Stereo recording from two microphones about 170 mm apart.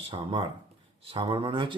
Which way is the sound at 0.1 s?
30° right (ahead or behind).